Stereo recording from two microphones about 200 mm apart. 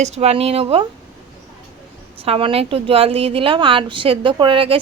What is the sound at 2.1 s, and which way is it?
Speech, 30° right (ahead or behind).